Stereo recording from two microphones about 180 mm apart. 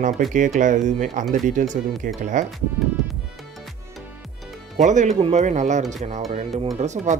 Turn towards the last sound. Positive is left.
turn(degrees=-40)  # may be behind; listen again after turning